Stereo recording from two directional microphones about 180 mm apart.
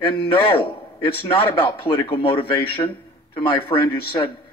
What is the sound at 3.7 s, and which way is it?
Speech, 25° left (ahead or behind).